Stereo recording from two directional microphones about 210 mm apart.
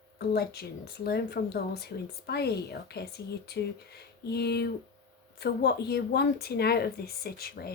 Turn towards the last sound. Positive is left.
turn(degrees=45)  # may be behind; listen again after turning